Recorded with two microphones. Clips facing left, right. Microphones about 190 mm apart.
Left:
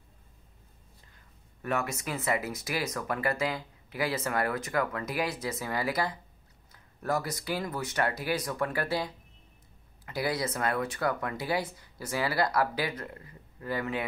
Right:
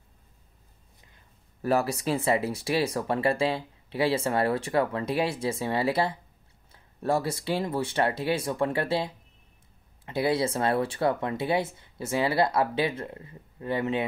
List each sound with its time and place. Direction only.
1.6 s speech: 35° right (ahead or behind)